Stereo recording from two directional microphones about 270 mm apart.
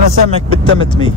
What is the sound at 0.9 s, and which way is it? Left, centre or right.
Speech, centre.